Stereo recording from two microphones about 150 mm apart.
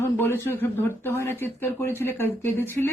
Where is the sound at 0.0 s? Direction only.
15° left (ahead or behind).